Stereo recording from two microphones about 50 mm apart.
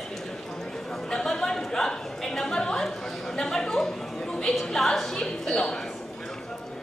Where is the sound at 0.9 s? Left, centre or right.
Centre.